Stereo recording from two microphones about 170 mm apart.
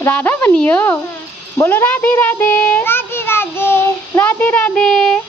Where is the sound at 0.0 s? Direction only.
10° left (ahead or behind).